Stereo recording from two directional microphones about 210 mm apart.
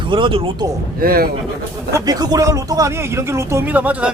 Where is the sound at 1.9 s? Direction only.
20° right (ahead or behind).